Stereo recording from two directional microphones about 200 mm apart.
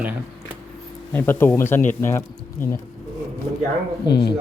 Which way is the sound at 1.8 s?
40° left (ahead or behind).